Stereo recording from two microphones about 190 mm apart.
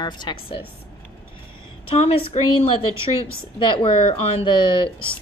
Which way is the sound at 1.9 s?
30° left (ahead or behind).